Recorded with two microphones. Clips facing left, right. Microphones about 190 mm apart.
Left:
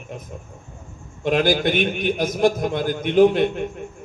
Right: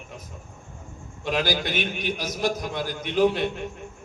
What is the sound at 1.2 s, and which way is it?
A man's voice, 50° left (ahead or behind).